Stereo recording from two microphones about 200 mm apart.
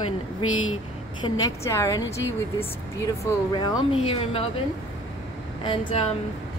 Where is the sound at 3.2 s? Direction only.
20° left (ahead or behind).